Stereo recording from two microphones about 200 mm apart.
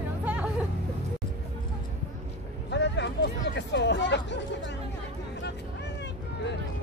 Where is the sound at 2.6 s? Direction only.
60° left (ahead or behind).